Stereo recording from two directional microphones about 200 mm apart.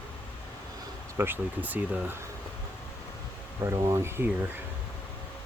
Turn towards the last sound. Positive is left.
turn(degrees=-10)  # may be behind; listen again after turning